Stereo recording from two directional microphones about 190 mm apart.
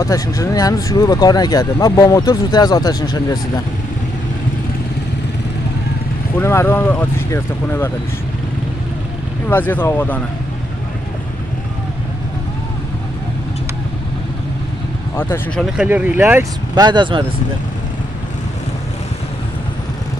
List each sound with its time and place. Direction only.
0.0 s speech: 15° left (ahead or behind)
6.3 s speech: 10° left (ahead or behind)
9.5 s speech: 10° left (ahead or behind)
15.1 s speech: 10° left (ahead or behind)
15.6 s speech: 5° right (ahead or behind)
16.8 s speech: 25° right (ahead or behind)